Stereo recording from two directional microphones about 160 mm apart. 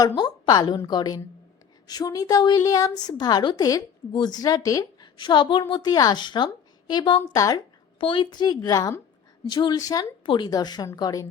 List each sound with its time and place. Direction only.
0.2 s a woman's voice: 25° left (ahead or behind)
7.3 s a woman's voice: 20° left (ahead or behind)
7.9 s a woman's voice: 30° left (ahead or behind)